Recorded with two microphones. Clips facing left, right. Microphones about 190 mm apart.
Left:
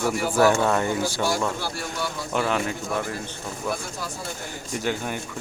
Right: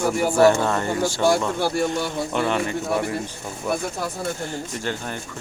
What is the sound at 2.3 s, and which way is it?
Speech, centre (ahead or behind).